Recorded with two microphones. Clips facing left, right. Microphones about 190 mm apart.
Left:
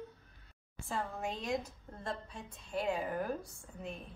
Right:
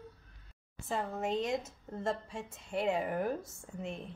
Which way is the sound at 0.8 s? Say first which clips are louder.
Right 3 dB; 20° right (ahead or behind).